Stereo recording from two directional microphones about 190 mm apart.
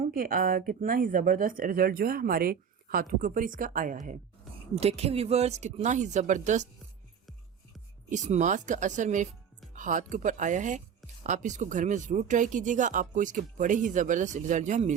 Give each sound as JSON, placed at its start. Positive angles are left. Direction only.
{"t": 0.0, "sound": "speech", "side_deg": -50}
{"t": 8.1, "sound": "speech", "side_deg": -40}